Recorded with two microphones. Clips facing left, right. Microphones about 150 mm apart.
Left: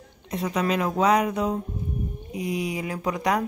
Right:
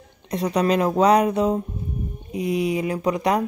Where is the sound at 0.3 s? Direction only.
35° right (ahead or behind).